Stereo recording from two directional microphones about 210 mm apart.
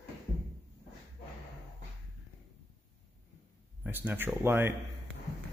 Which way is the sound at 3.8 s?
10° right (ahead or behind).